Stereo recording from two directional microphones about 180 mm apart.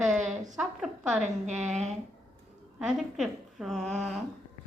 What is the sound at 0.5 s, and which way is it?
A woman's voice, centre (ahead or behind).